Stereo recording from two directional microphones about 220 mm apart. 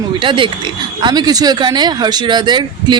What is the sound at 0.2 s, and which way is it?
Speech, 20° right (ahead or behind).